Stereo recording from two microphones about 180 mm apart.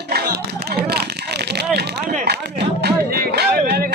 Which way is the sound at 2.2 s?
65° right (ahead or behind).